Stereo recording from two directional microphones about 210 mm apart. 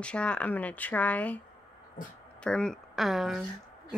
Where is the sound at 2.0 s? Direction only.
40° left (ahead or behind).